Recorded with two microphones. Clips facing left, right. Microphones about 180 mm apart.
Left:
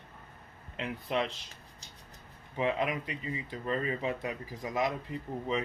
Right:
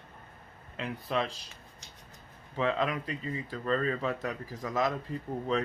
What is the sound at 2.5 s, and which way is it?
Speech, 15° left (ahead or behind).